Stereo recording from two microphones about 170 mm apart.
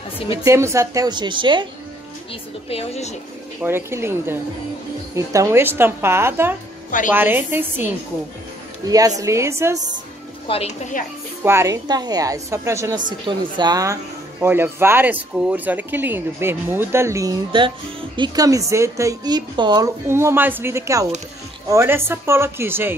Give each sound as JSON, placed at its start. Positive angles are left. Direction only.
{"t": 0.3, "sound": "speech", "side_deg": -15}
{"t": 2.7, "sound": "speech", "side_deg": 35}
{"t": 3.6, "sound": "speech", "side_deg": -15}
{"t": 10.5, "sound": "speech", "side_deg": 30}
{"t": 11.4, "sound": "speech", "side_deg": -15}
{"t": 17.5, "sound": "speech", "side_deg": -30}